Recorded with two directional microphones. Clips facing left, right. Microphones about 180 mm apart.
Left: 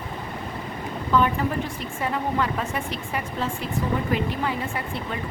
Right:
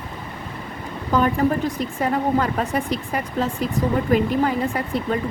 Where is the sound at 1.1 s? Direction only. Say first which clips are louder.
Right 3 dB; 40° right (ahead or behind).